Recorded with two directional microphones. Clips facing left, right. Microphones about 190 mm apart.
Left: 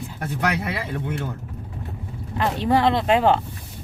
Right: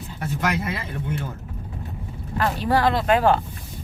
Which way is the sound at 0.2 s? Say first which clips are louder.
Even; 60° left (ahead or behind).